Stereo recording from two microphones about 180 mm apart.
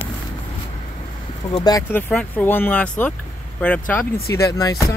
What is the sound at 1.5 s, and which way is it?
Speech, 20° left (ahead or behind).